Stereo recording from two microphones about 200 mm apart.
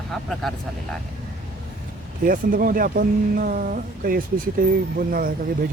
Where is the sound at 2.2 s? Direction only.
45° right (ahead or behind).